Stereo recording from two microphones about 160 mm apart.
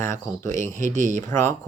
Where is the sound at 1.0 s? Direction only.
50° right (ahead or behind).